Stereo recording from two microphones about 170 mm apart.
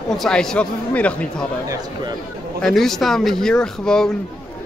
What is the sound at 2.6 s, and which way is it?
Speech, centre (ahead or behind).